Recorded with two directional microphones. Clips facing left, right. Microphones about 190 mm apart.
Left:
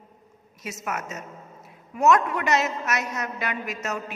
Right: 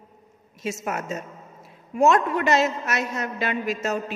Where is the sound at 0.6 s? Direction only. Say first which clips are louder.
Right 4 dB; 30° right (ahead or behind).